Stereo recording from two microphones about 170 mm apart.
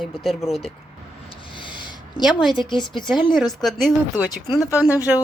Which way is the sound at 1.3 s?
30° left (ahead or behind).